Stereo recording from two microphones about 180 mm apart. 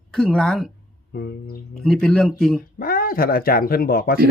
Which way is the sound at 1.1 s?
65° left (ahead or behind).